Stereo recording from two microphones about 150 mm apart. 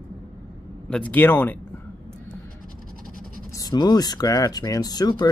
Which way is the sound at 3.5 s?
25° left (ahead or behind).